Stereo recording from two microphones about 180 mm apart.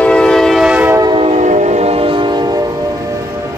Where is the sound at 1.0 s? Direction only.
30° right (ahead or behind).